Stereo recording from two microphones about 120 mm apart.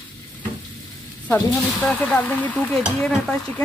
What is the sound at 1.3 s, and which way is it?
Speech, 10° left (ahead or behind).